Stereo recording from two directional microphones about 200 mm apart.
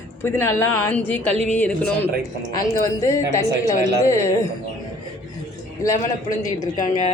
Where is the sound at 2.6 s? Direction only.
15° left (ahead or behind).